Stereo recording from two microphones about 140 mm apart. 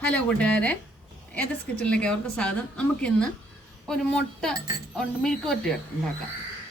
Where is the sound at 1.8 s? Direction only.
10° left (ahead or behind).